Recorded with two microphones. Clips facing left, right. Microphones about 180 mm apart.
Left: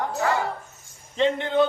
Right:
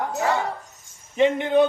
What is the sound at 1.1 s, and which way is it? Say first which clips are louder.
Speech: right 3 dB; 15° right (ahead or behind).